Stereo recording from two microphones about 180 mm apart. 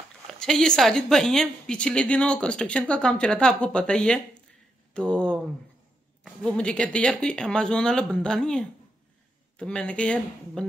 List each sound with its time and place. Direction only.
0.4 s a woman's voice: 5° left (ahead or behind)